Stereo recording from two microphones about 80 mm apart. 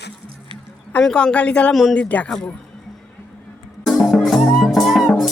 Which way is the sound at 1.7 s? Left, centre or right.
Centre.